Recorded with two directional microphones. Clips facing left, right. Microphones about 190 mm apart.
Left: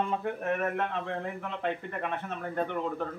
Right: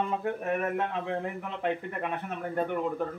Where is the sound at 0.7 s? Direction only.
10° right (ahead or behind).